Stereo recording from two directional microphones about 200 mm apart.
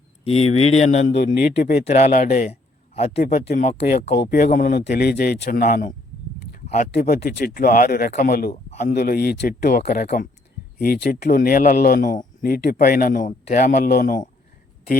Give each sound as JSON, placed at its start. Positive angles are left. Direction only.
{"t": 0.4, "sound": "speech", "side_deg": 90}
{"t": 0.8, "sound": "a man's voice", "side_deg": 35}
{"t": 1.2, "sound": "speech", "side_deg": 50}
{"t": 1.8, "sound": "a man's voice", "side_deg": 35}
{"t": 6.9, "sound": "speech", "side_deg": 50}
{"t": 8.7, "sound": "a sound", "side_deg": 35}
{"t": 9.0, "sound": "speech", "side_deg": 50}